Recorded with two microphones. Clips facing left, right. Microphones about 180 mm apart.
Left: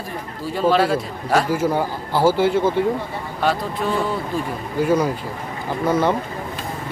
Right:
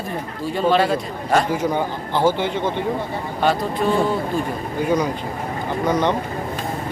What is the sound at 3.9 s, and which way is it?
Speech, 25° right (ahead or behind).